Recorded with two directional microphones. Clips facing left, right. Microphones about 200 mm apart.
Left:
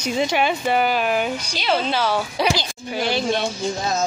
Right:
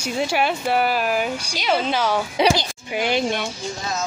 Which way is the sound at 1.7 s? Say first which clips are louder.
Even; 15° right (ahead or behind).